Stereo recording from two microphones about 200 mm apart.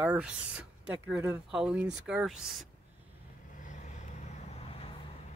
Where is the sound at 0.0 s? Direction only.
5° right (ahead or behind).